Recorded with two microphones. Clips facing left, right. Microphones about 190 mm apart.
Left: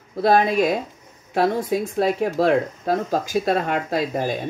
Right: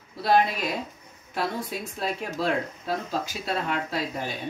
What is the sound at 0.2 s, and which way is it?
Speech, 50° left (ahead or behind).